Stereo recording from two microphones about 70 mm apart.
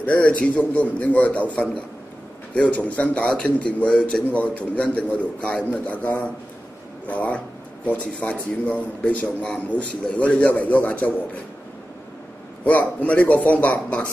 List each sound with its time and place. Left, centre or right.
0.0 s a man's voice: centre
7.1 s a sound: centre
8.2 s a man's voice: centre
12.6 s a man's voice: left